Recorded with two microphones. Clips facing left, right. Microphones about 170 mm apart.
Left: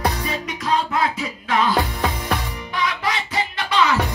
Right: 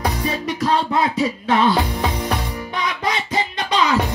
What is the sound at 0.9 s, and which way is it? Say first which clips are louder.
Music: right 4 dB; 25° right (ahead or behind).